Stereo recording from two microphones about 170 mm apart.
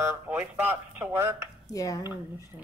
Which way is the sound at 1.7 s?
20° left (ahead or behind).